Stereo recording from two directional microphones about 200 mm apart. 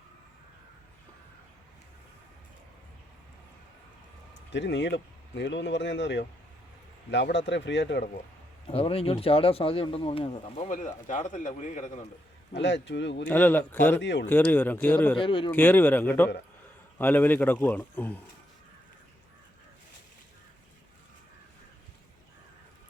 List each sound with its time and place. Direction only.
4.5 s speech: 60° left (ahead or behind)
8.6 s speech: 30° left (ahead or behind)
12.5 s speech: 60° left (ahead or behind)
13.2 s a man's voice: 10° left (ahead or behind)
14.0 s speech: 60° left (ahead or behind)
14.3 s a man's voice: 10° left (ahead or behind)
15.2 s speech: 25° left (ahead or behind)
15.5 s a man's voice: 10° left (ahead or behind)